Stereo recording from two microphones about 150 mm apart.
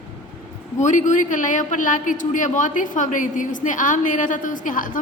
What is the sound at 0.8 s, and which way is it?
A man's voice, 55° left (ahead or behind).